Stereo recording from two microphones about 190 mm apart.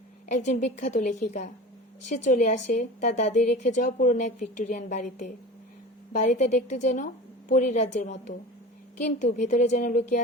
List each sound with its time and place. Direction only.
0.3 s a woman's voice: 40° left (ahead or behind)